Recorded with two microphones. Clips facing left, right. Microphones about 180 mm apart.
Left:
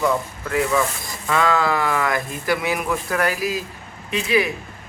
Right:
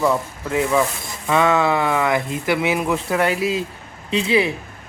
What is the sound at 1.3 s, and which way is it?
A man's voice, 20° right (ahead or behind).